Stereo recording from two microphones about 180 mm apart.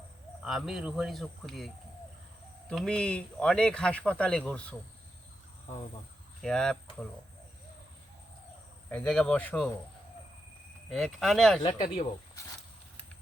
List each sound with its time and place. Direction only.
0.4 s speech: centre (ahead or behind)
6.4 s speech: 5° left (ahead or behind)
8.9 s speech: 5° left (ahead or behind)
10.8 s speech: centre (ahead or behind)
11.7 s speech: 35° left (ahead or behind)